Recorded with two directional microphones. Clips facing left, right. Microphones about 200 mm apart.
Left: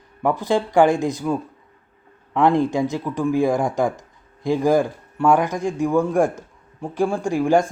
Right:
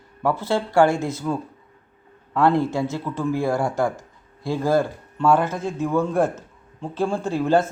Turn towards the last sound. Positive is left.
turn(degrees=15)  # may be behind; listen again after turning